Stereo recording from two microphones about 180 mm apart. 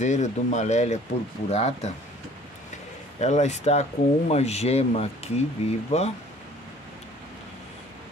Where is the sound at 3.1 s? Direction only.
40° left (ahead or behind).